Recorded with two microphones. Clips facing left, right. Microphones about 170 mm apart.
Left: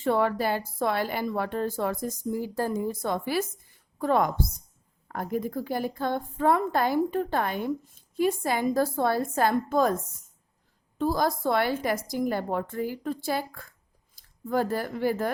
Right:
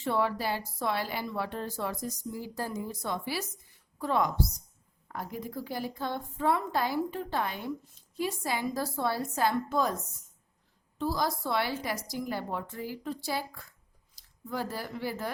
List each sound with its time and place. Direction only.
0.0 s a woman's voice: 50° left (ahead or behind)